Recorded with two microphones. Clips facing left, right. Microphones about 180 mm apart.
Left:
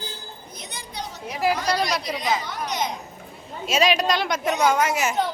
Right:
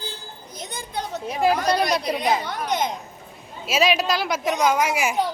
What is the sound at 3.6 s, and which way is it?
Speech, 5° right (ahead or behind).